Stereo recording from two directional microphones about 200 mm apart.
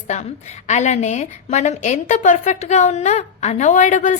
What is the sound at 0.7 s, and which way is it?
A woman's voice, 35° left (ahead or behind).